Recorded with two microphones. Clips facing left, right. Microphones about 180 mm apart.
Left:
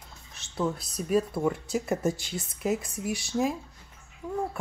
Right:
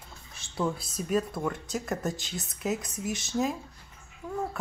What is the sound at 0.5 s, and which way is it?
Speech, centre (ahead or behind).